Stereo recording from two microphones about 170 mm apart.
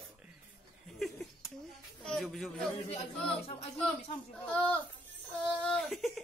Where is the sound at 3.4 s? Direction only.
35° left (ahead or behind).